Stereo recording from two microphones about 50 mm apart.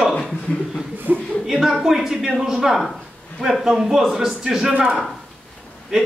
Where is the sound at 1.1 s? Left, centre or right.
Right.